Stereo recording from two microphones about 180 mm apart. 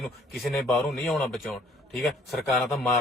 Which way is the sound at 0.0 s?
Centre (ahead or behind).